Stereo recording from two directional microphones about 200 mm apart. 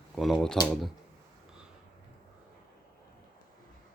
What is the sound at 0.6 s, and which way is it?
Speech, centre (ahead or behind).